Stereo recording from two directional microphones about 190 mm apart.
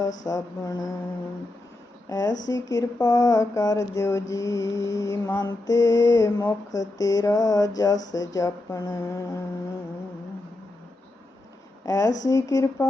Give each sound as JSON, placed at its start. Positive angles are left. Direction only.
{"t": 0.3, "sound": "speech", "side_deg": 20}
{"t": 2.0, "sound": "mantra", "side_deg": 20}
{"t": 2.5, "sound": "speech", "side_deg": 20}
{"t": 4.9, "sound": "mantra", "side_deg": 15}
{"t": 7.8, "sound": "speech", "side_deg": 20}
{"t": 11.9, "sound": "mantra", "side_deg": 20}